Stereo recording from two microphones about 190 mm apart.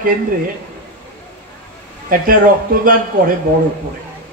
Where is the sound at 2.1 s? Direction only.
50° right (ahead or behind).